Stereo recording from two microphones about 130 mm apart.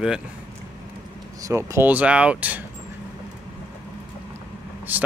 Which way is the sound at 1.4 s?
25° right (ahead or behind).